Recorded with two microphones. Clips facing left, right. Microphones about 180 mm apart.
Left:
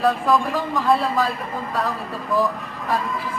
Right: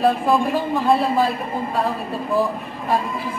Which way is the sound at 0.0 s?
25° right (ahead or behind).